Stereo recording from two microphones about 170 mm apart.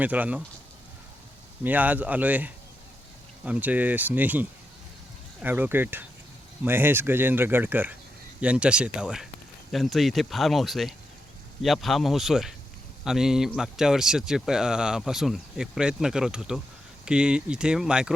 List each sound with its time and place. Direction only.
0.0 s speech: 10° right (ahead or behind)
1.6 s speech: 10° right (ahead or behind)